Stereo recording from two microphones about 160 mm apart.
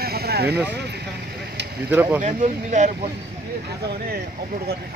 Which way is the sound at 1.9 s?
10° right (ahead or behind).